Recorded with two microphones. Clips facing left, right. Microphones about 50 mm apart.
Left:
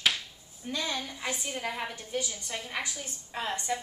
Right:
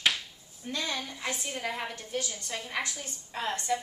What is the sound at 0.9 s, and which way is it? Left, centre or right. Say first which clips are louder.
A woman's voice: even; centre.